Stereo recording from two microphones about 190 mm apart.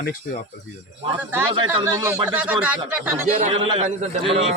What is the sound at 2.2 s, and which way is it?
Speech, 5° right (ahead or behind).